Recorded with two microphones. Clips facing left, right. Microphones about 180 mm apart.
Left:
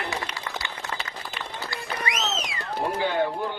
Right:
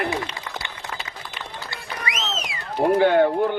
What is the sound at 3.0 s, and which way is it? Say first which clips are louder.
Speech: right 8 dB; 60° right (ahead or behind).